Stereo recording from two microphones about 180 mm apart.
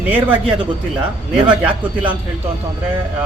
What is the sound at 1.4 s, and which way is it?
Speech, 5° right (ahead or behind).